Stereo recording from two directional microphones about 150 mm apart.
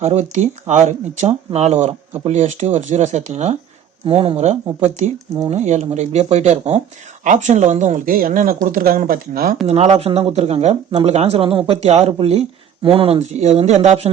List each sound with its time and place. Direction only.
0.0 s speech: 45° right (ahead or behind)
4.0 s speech: 35° right (ahead or behind); by 9.6 s 80° right
9.6 s speech: 45° right (ahead or behind)
13.2 s speech: 50° right (ahead or behind)